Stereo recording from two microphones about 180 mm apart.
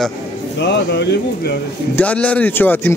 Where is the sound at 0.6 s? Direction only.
70° left (ahead or behind).